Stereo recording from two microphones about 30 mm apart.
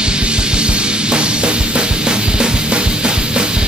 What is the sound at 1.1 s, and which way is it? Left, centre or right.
Music, right.